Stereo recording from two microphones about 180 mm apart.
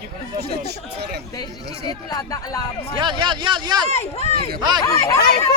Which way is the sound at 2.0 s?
20° left (ahead or behind).